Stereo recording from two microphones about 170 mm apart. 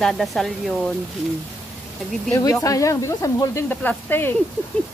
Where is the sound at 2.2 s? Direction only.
15° left (ahead or behind).